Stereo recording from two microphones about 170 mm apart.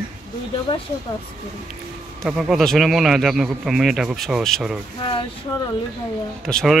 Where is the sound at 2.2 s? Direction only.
5° right (ahead or behind).